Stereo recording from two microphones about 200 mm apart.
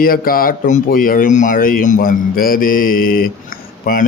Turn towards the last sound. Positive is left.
turn(degrees=45)  # may be behind; listen again after turning